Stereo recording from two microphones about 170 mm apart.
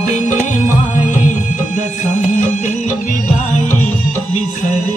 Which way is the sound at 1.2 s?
45° left (ahead or behind).